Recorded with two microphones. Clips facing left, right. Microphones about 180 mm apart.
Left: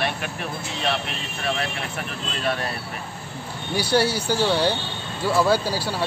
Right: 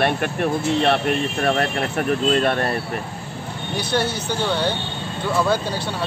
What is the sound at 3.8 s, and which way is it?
Speech, 10° left (ahead or behind).